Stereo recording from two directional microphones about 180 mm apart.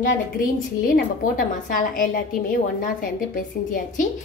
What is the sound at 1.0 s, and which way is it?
A woman's voice, 50° left (ahead or behind).